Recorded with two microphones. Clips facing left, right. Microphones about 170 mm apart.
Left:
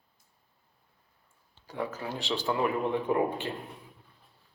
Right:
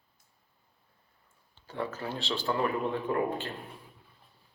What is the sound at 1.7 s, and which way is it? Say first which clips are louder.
Speech: even; 15° left (ahead or behind).